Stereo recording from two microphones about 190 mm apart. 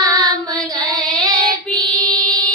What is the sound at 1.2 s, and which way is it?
Child singing, 20° right (ahead or behind).